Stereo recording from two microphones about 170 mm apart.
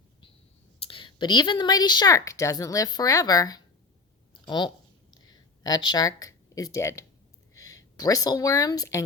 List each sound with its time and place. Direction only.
0.9 s a woman's voice: 30° left (ahead or behind)
5.1 s a sound: 25° left (ahead or behind)
7.5 s speech: 20° left (ahead or behind)